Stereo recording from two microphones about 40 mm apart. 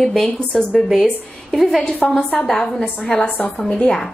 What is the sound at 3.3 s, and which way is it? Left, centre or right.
Speech, left.